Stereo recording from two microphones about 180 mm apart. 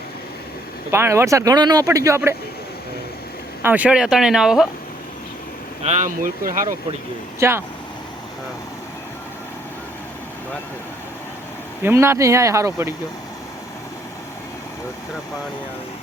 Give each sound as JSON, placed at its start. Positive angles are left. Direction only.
{"t": 0.9, "sound": "speech", "side_deg": -15}
{"t": 3.6, "sound": "speech", "side_deg": -10}
{"t": 5.8, "sound": "speech", "side_deg": -40}
{"t": 7.3, "sound": "speech", "side_deg": -15}
{"t": 11.8, "sound": "speech", "side_deg": -15}